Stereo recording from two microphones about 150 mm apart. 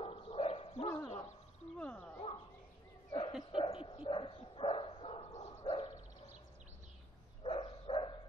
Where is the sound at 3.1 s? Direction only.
35° left (ahead or behind).